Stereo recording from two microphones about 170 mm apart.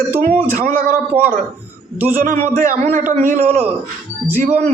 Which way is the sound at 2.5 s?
50° right (ahead or behind).